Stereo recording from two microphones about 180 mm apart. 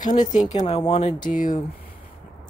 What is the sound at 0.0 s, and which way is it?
Speech, 45° left (ahead or behind).